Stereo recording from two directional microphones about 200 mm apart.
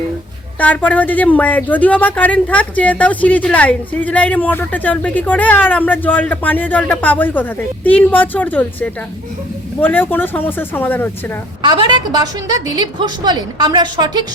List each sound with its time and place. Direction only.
0.6 s speech: 10° left (ahead or behind)
11.6 s a woman's voice: 20° right (ahead or behind)